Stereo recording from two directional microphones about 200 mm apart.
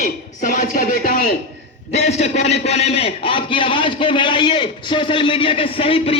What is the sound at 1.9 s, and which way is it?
Speech, 35° left (ahead or behind).